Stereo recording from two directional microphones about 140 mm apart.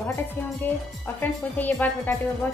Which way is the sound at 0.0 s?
15° left (ahead or behind).